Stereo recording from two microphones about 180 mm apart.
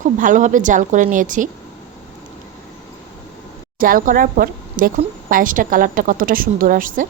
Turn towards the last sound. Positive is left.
turn(degrees=-50)  # may be behind; listen again after turning